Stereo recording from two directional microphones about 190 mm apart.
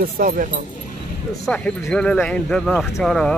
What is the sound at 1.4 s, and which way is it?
Speech, 5° left (ahead or behind).